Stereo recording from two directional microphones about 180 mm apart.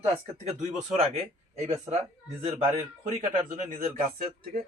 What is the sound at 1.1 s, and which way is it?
Speech, 40° right (ahead or behind).